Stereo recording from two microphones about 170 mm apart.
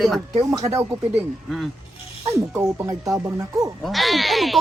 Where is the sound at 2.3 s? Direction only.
15° right (ahead or behind).